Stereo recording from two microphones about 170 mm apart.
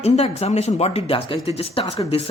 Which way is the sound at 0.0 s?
40° left (ahead or behind).